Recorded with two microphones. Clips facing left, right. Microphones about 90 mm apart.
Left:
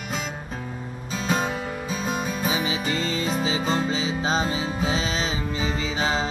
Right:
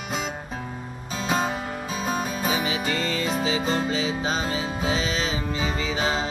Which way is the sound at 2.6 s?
25° left (ahead or behind).